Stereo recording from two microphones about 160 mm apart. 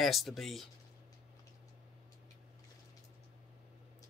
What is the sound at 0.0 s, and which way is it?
Speech, centre (ahead or behind).